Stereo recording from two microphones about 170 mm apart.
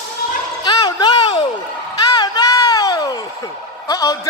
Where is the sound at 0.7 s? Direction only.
25° left (ahead or behind).